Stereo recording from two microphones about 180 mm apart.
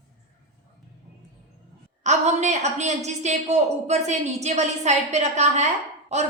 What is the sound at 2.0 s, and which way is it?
A woman's voice, 40° right (ahead or behind).